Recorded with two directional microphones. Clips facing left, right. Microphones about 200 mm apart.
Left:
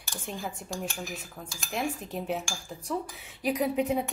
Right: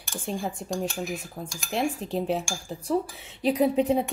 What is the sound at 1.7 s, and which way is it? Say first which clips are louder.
A woman's voice: right 5 dB; 30° right (ahead or behind).